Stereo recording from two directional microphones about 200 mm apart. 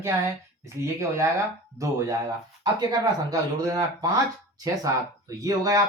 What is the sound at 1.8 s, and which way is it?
Speech, 15° right (ahead or behind).